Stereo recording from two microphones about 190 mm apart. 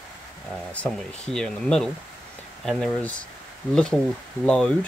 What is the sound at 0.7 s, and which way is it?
Speech, 5° left (ahead or behind).